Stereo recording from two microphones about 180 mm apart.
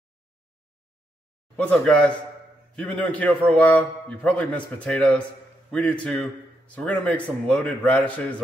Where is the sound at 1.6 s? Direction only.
5° left (ahead or behind).